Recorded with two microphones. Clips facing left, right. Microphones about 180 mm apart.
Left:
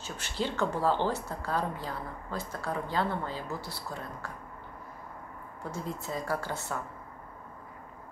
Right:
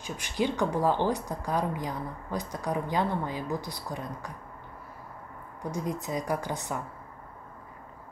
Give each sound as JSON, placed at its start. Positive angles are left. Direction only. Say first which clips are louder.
{"t": 0.0, "sound": "a woman's voice", "louder": "right 4 dB", "side_deg": -15}
{"t": 5.6, "sound": "a woman's voice", "louder": "right 5 dB", "side_deg": -15}